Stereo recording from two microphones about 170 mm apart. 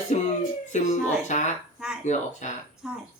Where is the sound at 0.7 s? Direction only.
45° left (ahead or behind).